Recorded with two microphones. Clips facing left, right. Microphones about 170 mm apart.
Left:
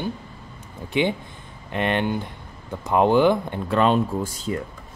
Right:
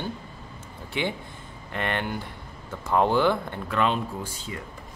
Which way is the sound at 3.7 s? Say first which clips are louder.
Left 6 dB; 40° left (ahead or behind).